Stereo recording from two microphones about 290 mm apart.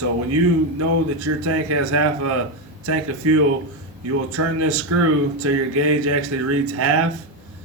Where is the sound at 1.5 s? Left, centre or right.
Right.